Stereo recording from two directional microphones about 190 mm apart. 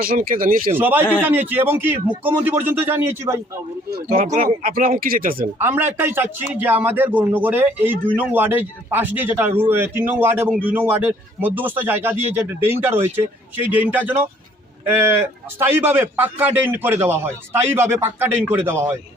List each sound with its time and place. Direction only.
0.0 s speech: 50° right (ahead or behind)
0.8 s a man's voice: 10° right (ahead or behind)
4.1 s speech: 40° right (ahead or behind)
5.5 s a man's voice: 10° right (ahead or behind)
15.5 s a man's voice: 10° right (ahead or behind)